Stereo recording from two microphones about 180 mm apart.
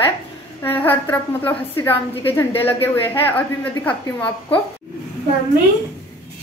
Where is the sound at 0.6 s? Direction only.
10° left (ahead or behind).